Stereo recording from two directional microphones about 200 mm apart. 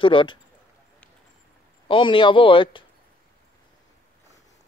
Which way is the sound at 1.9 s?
25° left (ahead or behind).